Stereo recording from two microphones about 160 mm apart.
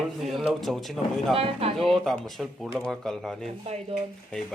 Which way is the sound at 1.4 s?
35° right (ahead or behind).